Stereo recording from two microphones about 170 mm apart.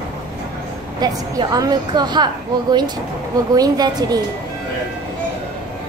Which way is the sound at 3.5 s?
20° right (ahead or behind).